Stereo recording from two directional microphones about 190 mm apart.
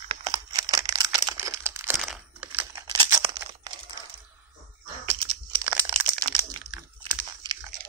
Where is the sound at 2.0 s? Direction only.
Centre (ahead or behind).